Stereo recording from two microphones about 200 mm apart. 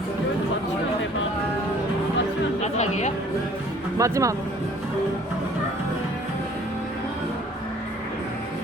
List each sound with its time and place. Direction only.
2.7 s chatter: 35° left (ahead or behind)
3.9 s speech: 15° right (ahead or behind)